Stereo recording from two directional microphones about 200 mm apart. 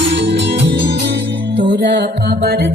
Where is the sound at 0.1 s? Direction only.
55° right (ahead or behind).